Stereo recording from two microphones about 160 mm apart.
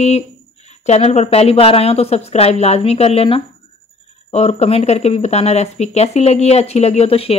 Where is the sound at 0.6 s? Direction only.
45° left (ahead or behind).